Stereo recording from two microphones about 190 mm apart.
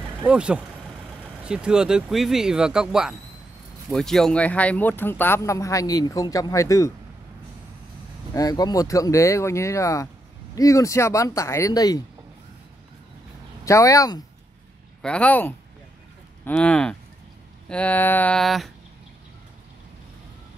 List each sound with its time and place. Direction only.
0.2 s speech: 5° right (ahead or behind); by 6.9 s 15° left (ahead or behind)
8.3 s speech: 20° left (ahead or behind)
13.7 s speech: 15° left (ahead or behind)
15.0 s speech: 5° left (ahead or behind)